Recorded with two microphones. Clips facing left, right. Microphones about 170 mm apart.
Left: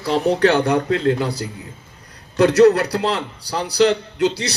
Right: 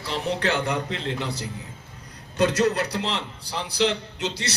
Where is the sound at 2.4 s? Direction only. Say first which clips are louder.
Left 9 dB; 65° left (ahead or behind).